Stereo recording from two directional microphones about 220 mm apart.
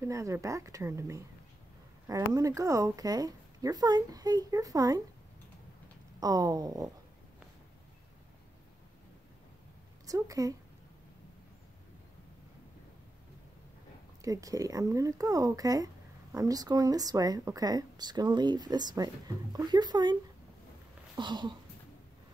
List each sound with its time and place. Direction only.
0.0 s speech: 15° right (ahead or behind)
6.1 s speech: 15° right (ahead or behind)
10.0 s a woman's voice: 15° right (ahead or behind)
14.2 s speech: 15° right (ahead or behind)
21.2 s a sound: 20° right (ahead or behind)